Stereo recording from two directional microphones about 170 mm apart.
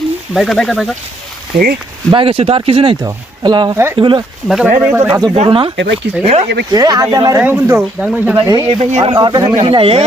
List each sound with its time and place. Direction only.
0.3 s speech: centre (ahead or behind)
1.5 s speech: 60° right (ahead or behind)
2.1 s speech: 35° right (ahead or behind)
4.4 s speech: 5° right (ahead or behind)
5.3 s speech: 30° right (ahead or behind)
5.7 s speech: 90° right
6.2 s speech: 35° right (ahead or behind)
6.7 s speech: 25° right (ahead or behind)
8.4 s speech: 25° right (ahead or behind)
8.8 s speech: 35° right (ahead or behind)